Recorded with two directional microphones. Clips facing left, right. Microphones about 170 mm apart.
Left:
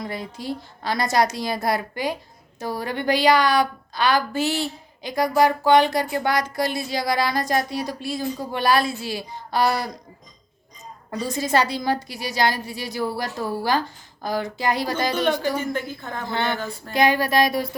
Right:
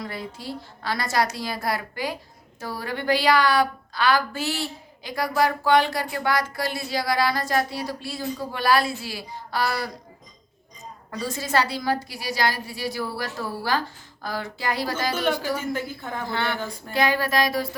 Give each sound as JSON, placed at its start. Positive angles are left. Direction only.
{"t": 0.0, "sound": "speech", "side_deg": 20}
{"t": 11.1, "sound": "speech", "side_deg": 15}
{"t": 15.4, "sound": "a woman's voice", "side_deg": -5}
{"t": 16.2, "sound": "speech", "side_deg": 20}
{"t": 16.6, "sound": "a woman's voice", "side_deg": -15}
{"t": 16.9, "sound": "speech", "side_deg": 15}